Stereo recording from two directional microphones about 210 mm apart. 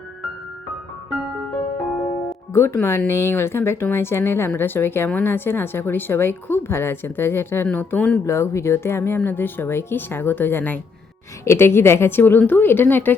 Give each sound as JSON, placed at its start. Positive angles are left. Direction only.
{"t": 2.5, "sound": "speech", "side_deg": 10}